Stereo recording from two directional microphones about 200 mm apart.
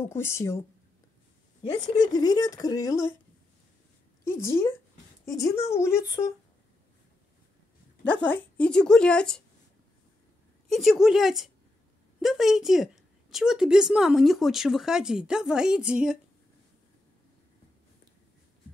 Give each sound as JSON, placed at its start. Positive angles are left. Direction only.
{"t": 0.0, "sound": "speech", "side_deg": 10}
{"t": 4.2, "sound": "speech", "side_deg": 15}
{"t": 8.0, "sound": "a woman's voice", "side_deg": 5}
{"t": 10.7, "sound": "a woman's voice", "side_deg": 0}